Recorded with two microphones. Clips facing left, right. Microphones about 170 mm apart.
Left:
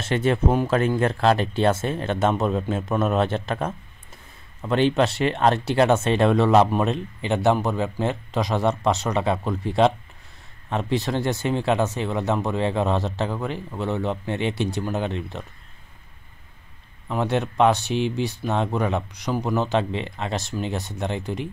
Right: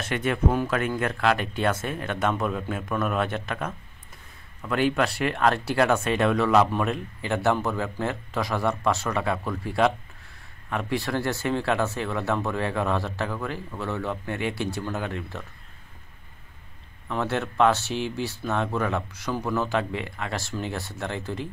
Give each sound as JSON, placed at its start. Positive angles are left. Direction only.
{"t": 0.0, "sound": "speech", "side_deg": 30}
{"t": 17.1, "sound": "speech", "side_deg": 15}